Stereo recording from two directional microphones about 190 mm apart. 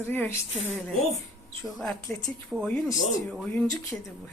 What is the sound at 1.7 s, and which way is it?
Speech, centre (ahead or behind).